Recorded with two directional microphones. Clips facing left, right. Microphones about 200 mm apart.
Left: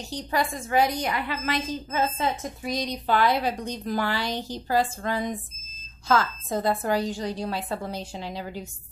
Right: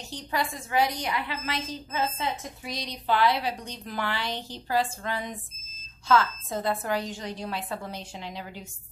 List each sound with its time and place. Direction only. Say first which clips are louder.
0.1 s a woman's voice: left 3 dB; 45° left (ahead or behind)